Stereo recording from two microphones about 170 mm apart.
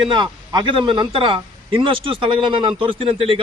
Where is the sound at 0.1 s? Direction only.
30° right (ahead or behind).